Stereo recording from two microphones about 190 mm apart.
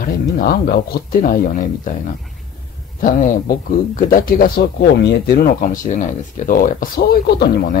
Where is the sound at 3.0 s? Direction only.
45° left (ahead or behind).